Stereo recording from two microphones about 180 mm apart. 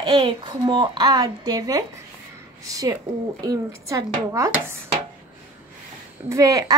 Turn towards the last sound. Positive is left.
turn(degrees=-20)  # may be behind; listen again after turning